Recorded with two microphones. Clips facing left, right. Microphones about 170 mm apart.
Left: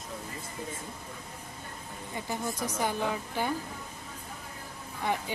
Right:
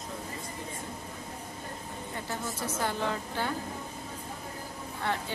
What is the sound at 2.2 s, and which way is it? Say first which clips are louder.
Speech: left 3 dB; 15° left (ahead or behind).